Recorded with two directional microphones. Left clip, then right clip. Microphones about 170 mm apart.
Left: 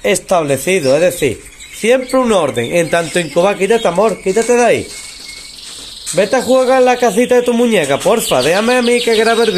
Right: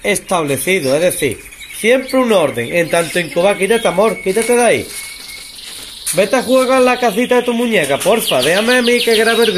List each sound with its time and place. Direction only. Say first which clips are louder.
0.0 s speech: left 3 dB; 10° left (ahead or behind)
3.5 s speech: left 1 dB; 5° left (ahead or behind)
6.1 s speech: left 1 dB; 15° left (ahead or behind)